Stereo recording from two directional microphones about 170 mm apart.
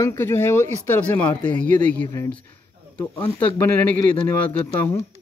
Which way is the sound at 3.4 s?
10° left (ahead or behind).